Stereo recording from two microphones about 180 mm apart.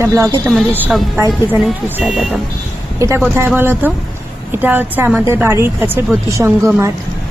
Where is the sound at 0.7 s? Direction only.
5° right (ahead or behind).